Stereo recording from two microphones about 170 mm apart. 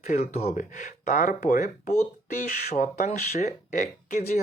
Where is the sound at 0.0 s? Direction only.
45° left (ahead or behind).